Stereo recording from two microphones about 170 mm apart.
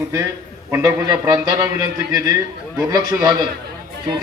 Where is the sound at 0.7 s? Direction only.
20° right (ahead or behind).